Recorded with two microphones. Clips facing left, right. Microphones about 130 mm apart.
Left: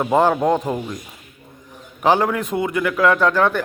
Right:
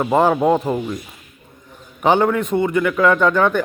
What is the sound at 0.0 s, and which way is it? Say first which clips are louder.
Speech: right 1 dB; centre (ahead or behind).